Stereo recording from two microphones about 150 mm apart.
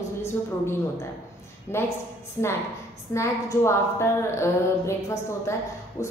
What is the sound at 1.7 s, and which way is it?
Speech, 15° left (ahead or behind).